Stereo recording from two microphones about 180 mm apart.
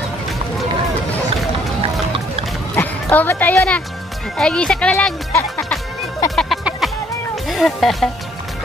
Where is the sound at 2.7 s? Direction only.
10° left (ahead or behind).